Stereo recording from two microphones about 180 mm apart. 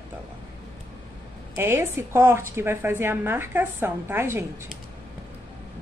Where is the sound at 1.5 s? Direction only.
15° right (ahead or behind).